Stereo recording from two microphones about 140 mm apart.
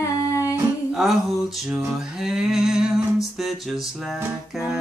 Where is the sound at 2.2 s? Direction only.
5° right (ahead or behind).